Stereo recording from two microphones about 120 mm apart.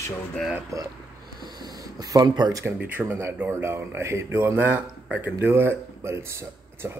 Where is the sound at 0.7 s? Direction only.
25° right (ahead or behind).